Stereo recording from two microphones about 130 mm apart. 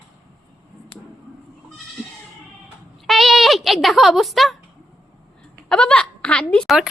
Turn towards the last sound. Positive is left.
turn(degrees=0)  # may be behind; listen again after turning